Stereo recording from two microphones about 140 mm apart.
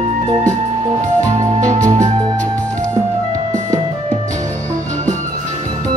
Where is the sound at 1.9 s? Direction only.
25° right (ahead or behind).